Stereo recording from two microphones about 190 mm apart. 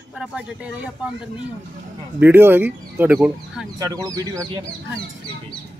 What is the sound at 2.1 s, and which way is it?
Speech, 10° right (ahead or behind).